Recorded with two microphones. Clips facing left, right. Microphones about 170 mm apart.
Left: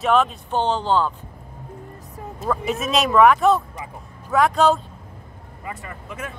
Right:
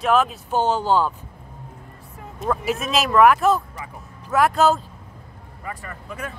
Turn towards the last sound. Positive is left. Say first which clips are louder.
# even
turn(degrees=20)  # may be behind; listen again after turning